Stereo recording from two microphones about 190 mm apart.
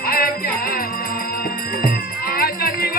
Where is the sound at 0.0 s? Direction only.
50° left (ahead or behind).